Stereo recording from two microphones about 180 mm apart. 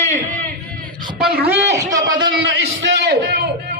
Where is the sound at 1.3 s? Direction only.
60° right (ahead or behind).